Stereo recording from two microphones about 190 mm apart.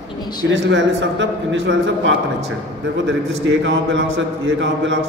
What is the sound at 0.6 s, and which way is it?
A man's voice, 75° right (ahead or behind).